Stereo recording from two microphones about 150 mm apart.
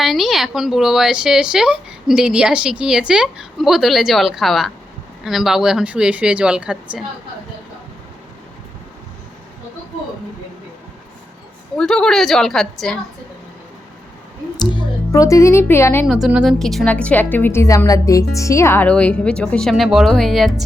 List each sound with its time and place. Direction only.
0.0 s speech: centre (ahead or behind)
11.8 s speech: 5° left (ahead or behind)
14.6 s music: 30° left (ahead or behind)
15.1 s a woman's voice: 20° left (ahead or behind)
16.0 s a woman's voice: 5° right (ahead or behind)